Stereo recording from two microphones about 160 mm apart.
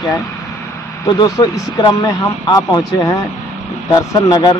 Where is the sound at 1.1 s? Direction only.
25° left (ahead or behind).